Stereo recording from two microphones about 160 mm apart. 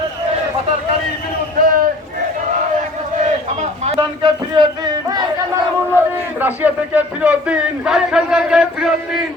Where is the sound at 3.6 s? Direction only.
40° right (ahead or behind); by 5.2 s 25° right (ahead or behind).